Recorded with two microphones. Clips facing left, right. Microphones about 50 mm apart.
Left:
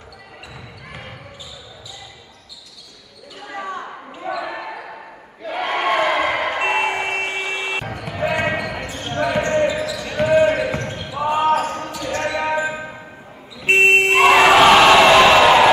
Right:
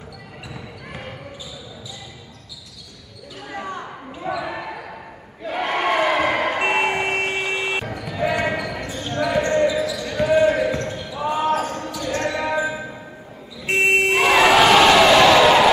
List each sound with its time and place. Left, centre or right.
3.4 s basketball bounce: centre
8.0 s basketball bounce: left
11.6 s basketball bounce: left
13.7 s vehicle: left
14.2 s crowd: centre